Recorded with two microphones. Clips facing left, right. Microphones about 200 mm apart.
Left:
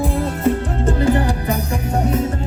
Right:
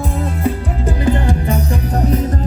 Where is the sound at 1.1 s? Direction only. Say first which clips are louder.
Right 3 dB; 25° right (ahead or behind).